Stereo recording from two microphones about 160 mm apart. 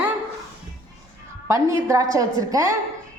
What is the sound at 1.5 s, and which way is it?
A woman's voice, 20° right (ahead or behind).